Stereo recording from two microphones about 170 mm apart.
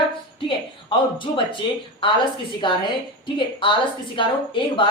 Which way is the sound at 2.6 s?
30° left (ahead or behind).